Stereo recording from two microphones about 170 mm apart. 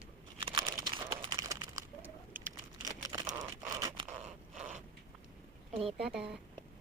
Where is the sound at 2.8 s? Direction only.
20° right (ahead or behind).